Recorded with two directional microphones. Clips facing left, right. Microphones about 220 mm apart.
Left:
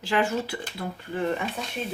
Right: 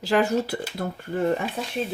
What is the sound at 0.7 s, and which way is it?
Speech, 45° right (ahead or behind).